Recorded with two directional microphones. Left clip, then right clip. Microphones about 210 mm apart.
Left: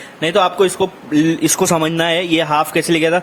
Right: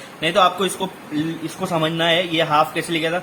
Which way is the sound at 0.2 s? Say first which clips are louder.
Left 3 dB; 45° left (ahead or behind).